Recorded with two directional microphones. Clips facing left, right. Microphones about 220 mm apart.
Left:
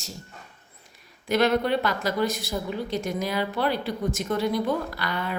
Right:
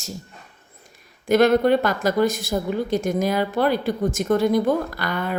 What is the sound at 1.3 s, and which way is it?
A woman's voice, 50° right (ahead or behind).